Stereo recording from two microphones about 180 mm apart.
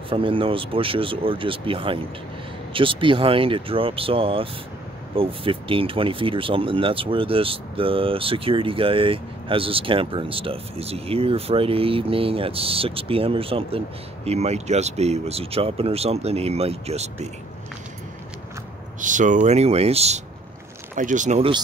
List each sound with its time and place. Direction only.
0.1 s speech: 30° right (ahead or behind)
18.9 s speech: 45° right (ahead or behind)
20.9 s speech: 45° right (ahead or behind)